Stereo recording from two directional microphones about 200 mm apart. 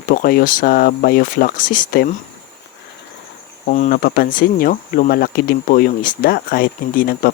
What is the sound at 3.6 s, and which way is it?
Speech, 40° left (ahead or behind).